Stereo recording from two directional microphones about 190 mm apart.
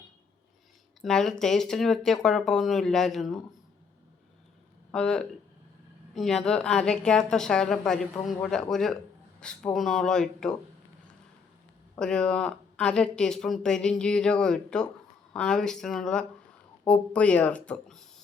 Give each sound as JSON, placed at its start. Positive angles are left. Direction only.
{"t": 1.0, "sound": "speech", "side_deg": 0}
{"t": 4.9, "sound": "speech", "side_deg": 5}
{"t": 11.9, "sound": "speech", "side_deg": 5}